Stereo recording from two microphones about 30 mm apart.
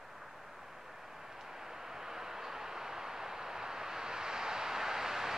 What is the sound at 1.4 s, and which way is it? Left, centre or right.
Vehicle, centre.